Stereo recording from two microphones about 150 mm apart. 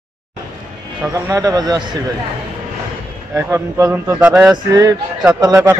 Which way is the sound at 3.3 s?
20° right (ahead or behind).